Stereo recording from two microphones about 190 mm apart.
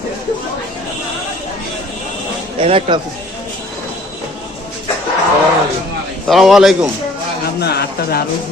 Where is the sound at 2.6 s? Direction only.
30° right (ahead or behind).